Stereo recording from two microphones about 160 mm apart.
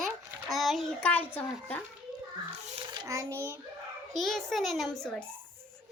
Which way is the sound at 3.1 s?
15° right (ahead or behind).